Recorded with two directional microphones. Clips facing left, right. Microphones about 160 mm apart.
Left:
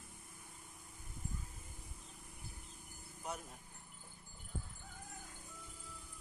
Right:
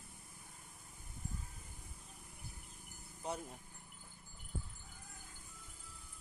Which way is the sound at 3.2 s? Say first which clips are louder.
Right 3 dB; 30° right (ahead or behind).